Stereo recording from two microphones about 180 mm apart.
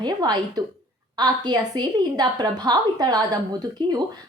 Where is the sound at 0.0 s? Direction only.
25° right (ahead or behind).